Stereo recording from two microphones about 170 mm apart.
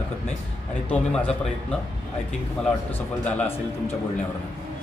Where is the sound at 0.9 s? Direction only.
10° left (ahead or behind).